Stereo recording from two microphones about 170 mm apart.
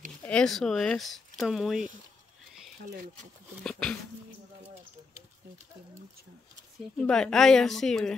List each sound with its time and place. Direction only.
0.2 s speech: 5° left (ahead or behind)
3.6 s speech: 5° left (ahead or behind)
7.0 s speech: 5° left (ahead or behind)